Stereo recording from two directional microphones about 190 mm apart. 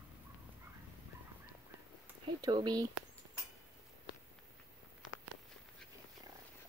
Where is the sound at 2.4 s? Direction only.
20° right (ahead or behind).